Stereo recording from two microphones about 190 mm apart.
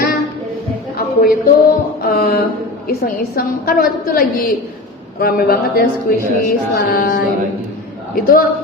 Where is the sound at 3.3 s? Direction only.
50° left (ahead or behind).